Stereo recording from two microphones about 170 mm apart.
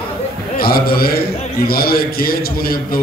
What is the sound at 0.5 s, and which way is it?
A man's voice, 60° left (ahead or behind).